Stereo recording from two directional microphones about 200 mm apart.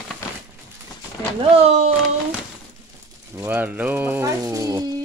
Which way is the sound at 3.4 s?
10° right (ahead or behind).